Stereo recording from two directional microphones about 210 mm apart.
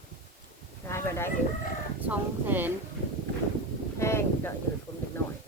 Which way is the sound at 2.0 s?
10° right (ahead or behind).